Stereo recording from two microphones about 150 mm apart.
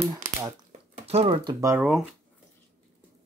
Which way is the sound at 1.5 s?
20° right (ahead or behind).